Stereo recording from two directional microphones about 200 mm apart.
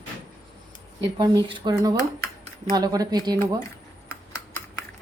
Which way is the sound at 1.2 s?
25° right (ahead or behind).